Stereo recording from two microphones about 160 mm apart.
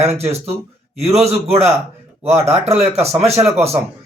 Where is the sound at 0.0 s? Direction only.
40° right (ahead or behind).